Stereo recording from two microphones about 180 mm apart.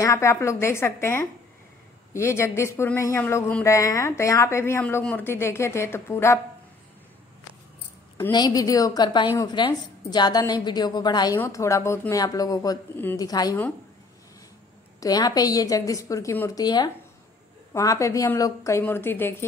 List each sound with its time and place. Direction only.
0.0 s speech: 15° left (ahead or behind)
8.2 s a woman's voice: 25° left (ahead or behind)
15.0 s a woman's voice: 20° left (ahead or behind)